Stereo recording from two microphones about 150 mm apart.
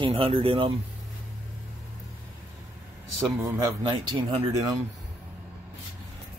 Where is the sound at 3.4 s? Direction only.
20° right (ahead or behind).